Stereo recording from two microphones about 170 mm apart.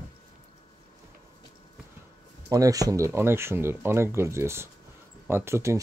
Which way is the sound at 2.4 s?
20° right (ahead or behind).